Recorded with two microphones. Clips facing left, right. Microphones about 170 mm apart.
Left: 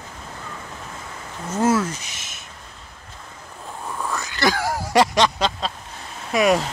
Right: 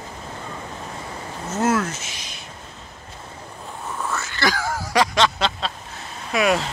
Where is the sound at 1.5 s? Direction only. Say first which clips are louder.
Left 2 dB; 10° left (ahead or behind).